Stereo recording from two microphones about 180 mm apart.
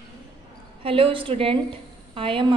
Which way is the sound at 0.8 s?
30° right (ahead or behind).